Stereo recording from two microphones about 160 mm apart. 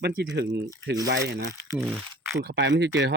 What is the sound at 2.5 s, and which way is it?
Speech, 90° right.